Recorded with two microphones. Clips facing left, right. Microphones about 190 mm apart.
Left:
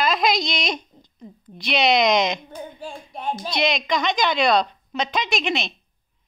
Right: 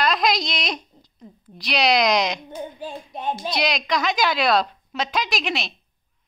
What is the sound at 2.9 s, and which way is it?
Speech, 20° right (ahead or behind).